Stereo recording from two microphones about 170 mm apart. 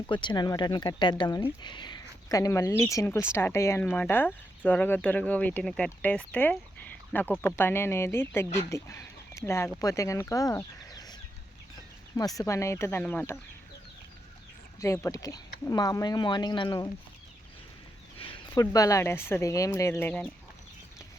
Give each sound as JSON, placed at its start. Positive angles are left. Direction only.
{"t": 0.1, "sound": "speech", "side_deg": 25}
{"t": 14.9, "sound": "speech", "side_deg": 20}
{"t": 18.2, "sound": "a sound", "side_deg": 30}
{"t": 18.6, "sound": "speech", "side_deg": 20}